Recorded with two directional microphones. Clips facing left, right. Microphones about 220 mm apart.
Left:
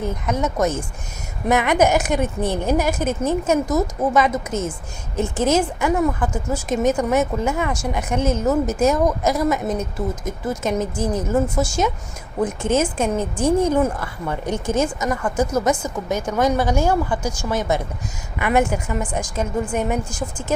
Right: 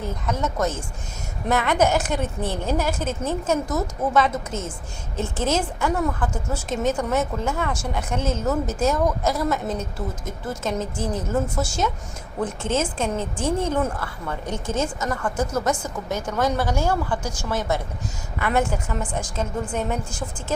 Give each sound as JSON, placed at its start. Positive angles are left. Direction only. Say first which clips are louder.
{"t": 0.3, "sound": "a woman's voice", "louder": "left 4 dB", "side_deg": 15}